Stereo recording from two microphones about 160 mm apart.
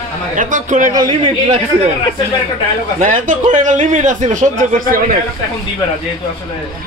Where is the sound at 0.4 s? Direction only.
55° right (ahead or behind).